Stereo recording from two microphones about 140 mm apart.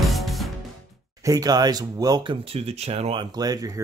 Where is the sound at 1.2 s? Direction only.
25° right (ahead or behind).